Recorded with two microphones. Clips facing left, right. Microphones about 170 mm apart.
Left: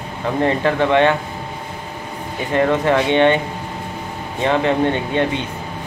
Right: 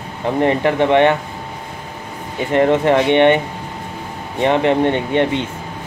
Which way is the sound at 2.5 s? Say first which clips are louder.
Right 3 dB; 25° right (ahead or behind).